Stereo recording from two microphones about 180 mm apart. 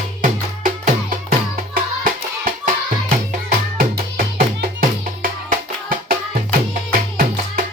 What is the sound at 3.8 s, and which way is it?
Music, 50° right (ahead or behind).